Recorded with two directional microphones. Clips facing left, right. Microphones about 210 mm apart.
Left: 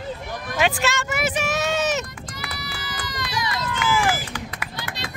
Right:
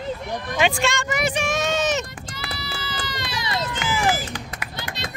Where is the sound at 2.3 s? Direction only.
30° right (ahead or behind).